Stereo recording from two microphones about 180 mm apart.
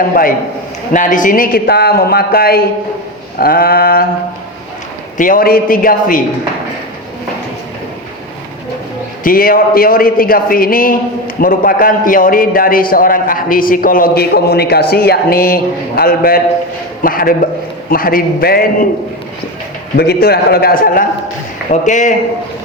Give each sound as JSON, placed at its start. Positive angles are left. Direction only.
{"t": 0.1, "sound": "a man's voice", "side_deg": 55}
{"t": 5.1, "sound": "a man's voice", "side_deg": 50}
{"t": 9.2, "sound": "a man's voice", "side_deg": 55}
{"t": 20.0, "sound": "speech", "side_deg": 60}
{"t": 21.7, "sound": "a man's voice", "side_deg": 45}